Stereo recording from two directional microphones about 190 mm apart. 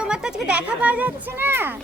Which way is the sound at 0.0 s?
5° right (ahead or behind).